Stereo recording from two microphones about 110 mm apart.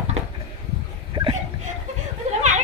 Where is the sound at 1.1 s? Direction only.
55° right (ahead or behind).